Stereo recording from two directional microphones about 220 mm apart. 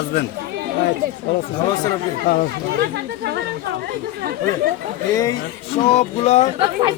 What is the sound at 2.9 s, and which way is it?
Speech, 50° right (ahead or behind).